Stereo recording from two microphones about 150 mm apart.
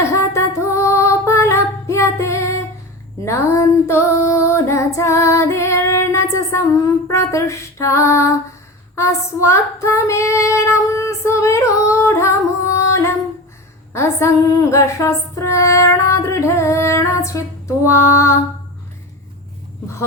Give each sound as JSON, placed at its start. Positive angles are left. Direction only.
{"t": 0.1, "sound": "female singing", "side_deg": 20}
{"t": 11.4, "sound": "singing", "side_deg": 20}
{"t": 13.9, "sound": "female singing", "side_deg": 20}